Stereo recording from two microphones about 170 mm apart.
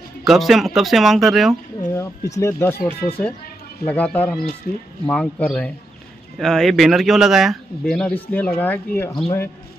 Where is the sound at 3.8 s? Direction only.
10° left (ahead or behind).